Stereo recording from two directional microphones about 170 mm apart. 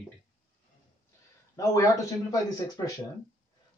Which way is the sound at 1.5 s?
20° left (ahead or behind).